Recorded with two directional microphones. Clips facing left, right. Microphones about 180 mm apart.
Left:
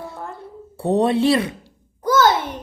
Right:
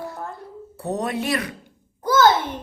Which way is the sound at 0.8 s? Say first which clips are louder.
Left 8 dB; 30° left (ahead or behind).